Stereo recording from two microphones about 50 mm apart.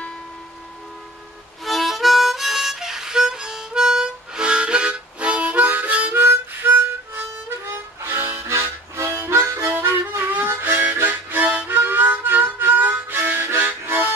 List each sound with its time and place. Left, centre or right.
1.6 s harmonica: centre; by 6.8 s right
6.8 s harmonica: right
8.5 s harmonica: right
9.7 s harmonica: right
10.3 s harmonica: right
13.8 s music: right